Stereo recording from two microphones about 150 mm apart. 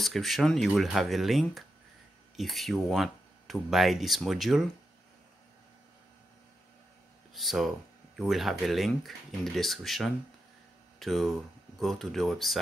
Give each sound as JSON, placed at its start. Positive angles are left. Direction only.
{"t": 0.0, "sound": "speech", "side_deg": 0}
{"t": 7.3, "sound": "speech", "side_deg": 0}